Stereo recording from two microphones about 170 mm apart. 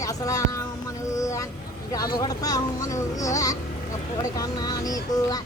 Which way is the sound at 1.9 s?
20° left (ahead or behind).